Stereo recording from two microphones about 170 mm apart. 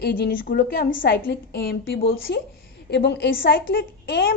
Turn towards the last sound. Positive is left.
turn(degrees=65)  # may be behind; listen again after turning